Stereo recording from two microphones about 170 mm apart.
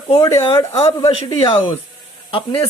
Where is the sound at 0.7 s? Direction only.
35° left (ahead or behind).